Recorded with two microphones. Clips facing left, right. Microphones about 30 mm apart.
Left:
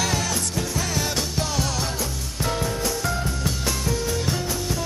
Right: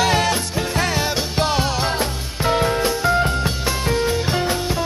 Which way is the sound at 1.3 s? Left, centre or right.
Right.